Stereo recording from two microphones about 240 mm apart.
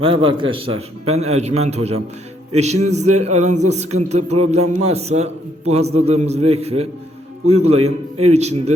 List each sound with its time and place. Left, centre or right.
0.0 s a man's voice: right